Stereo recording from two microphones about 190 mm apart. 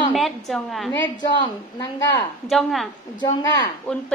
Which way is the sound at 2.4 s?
Centre (ahead or behind).